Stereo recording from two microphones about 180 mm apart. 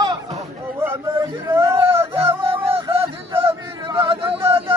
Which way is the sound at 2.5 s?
30° right (ahead or behind).